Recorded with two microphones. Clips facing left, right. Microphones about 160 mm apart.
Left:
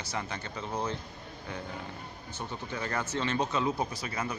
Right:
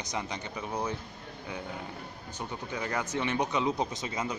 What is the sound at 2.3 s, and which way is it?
Speech, 15° right (ahead or behind).